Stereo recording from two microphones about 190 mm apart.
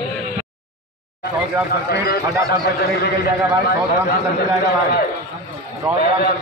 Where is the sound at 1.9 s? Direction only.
55° left (ahead or behind).